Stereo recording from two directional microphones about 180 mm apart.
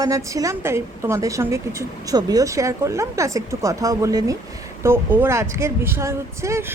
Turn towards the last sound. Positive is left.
turn(degrees=-15)  # may be behind; listen again after turning